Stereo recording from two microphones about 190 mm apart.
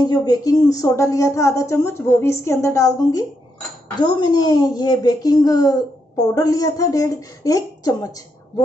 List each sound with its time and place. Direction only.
0.0 s speech: 20° left (ahead or behind)